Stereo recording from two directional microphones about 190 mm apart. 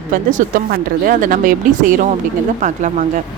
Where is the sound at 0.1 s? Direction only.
45° right (ahead or behind).